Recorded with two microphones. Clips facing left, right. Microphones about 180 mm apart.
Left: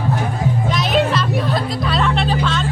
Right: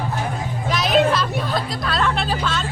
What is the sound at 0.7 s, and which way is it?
Music, centre (ahead or behind).